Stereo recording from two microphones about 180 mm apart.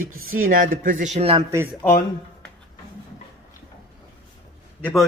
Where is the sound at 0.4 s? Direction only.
50° right (ahead or behind); by 1.5 s 30° right (ahead or behind).